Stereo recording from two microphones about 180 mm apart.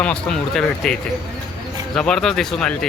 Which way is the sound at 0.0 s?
5° left (ahead or behind).